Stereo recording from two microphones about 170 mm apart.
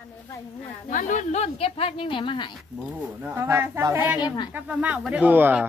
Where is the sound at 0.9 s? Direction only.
50° left (ahead or behind); by 2.5 s 30° left (ahead or behind).